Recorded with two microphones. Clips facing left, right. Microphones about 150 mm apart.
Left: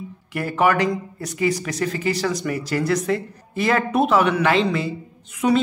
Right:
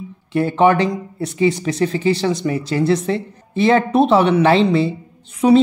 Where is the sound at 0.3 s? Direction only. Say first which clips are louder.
Right 6 dB; 25° right (ahead or behind).